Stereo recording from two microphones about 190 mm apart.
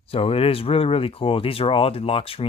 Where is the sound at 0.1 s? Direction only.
30° left (ahead or behind).